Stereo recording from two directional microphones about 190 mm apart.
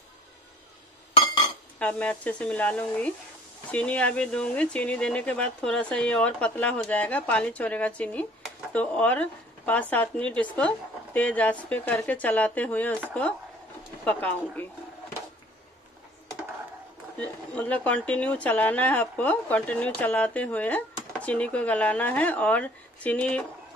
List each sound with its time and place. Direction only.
1.1 s chink: 25° left (ahead or behind)
1.8 s speech: 5° left (ahead or behind)
14.0 s speech: 10° left (ahead or behind)
17.2 s speech: 5° left (ahead or behind)